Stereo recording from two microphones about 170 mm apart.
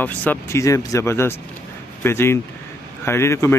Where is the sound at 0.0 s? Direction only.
10° left (ahead or behind).